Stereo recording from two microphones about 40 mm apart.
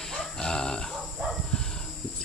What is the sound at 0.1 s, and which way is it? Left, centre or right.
Grunt, centre.